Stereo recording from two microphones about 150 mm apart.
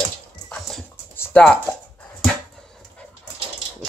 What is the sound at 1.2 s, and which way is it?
Speech, 10° left (ahead or behind).